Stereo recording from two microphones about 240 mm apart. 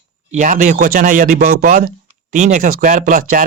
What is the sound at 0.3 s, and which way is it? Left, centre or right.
Speech, right.